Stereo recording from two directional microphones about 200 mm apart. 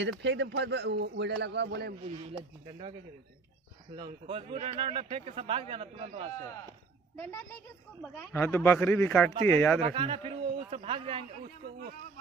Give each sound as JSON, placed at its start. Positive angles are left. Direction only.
{"t": 0.0, "sound": "speech", "side_deg": -60}
{"t": 3.9, "sound": "speech", "side_deg": -25}
{"t": 7.2, "sound": "speech", "side_deg": 10}
{"t": 9.8, "sound": "speech", "side_deg": -30}